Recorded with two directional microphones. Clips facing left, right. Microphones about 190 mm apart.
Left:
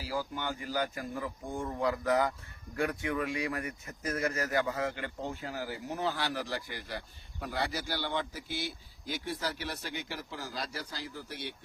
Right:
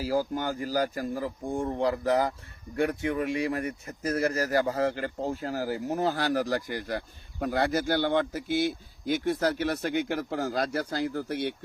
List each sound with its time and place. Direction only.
0.0 s speech: 40° right (ahead or behind)